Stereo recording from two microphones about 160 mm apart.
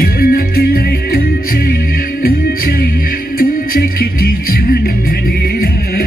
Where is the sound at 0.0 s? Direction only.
65° left (ahead or behind).